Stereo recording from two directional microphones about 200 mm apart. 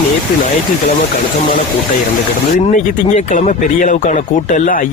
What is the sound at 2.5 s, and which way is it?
Speech, 40° left (ahead or behind).